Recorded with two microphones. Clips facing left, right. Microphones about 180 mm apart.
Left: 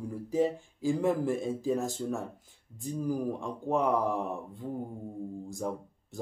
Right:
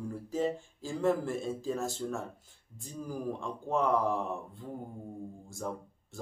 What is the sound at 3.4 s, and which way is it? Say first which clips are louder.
Speech: left 2 dB; 15° left (ahead or behind).